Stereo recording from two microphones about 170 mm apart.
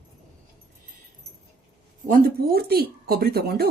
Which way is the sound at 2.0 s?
55° right (ahead or behind).